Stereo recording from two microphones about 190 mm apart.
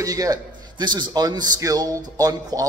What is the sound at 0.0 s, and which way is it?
A man's voice, 20° right (ahead or behind).